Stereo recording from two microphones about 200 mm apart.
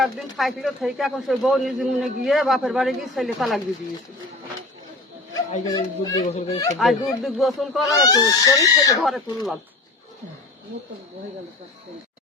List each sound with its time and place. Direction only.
0.0 s speech: centre (ahead or behind)
5.6 s speech: 20° left (ahead or behind)
6.2 s speech: 35° left (ahead or behind)
6.7 s speech: centre (ahead or behind)
7.9 s speech: 15° left (ahead or behind)
9.0 s speech: centre (ahead or behind)